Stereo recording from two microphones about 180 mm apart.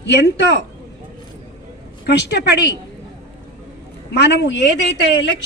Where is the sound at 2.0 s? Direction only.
65° left (ahead or behind).